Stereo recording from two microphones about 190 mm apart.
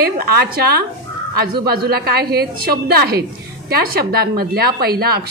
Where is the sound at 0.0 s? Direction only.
55° right (ahead or behind).